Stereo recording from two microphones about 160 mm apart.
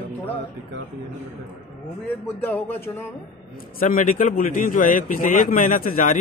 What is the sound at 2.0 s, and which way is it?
A man's voice, 15° left (ahead or behind).